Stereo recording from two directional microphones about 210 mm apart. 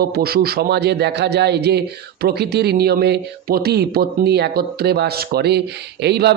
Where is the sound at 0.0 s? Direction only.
45° right (ahead or behind).